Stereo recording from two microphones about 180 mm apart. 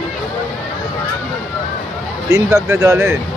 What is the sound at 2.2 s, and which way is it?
Speech, 15° right (ahead or behind).